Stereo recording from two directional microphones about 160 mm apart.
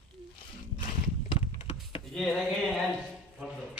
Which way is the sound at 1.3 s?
35° left (ahead or behind).